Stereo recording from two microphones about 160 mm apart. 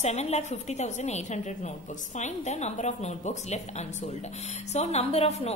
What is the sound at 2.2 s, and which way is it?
A woman's voice, 45° left (ahead or behind).